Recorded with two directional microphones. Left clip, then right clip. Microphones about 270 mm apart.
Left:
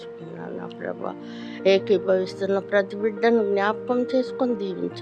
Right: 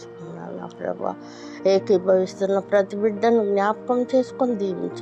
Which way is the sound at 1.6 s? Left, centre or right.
Centre.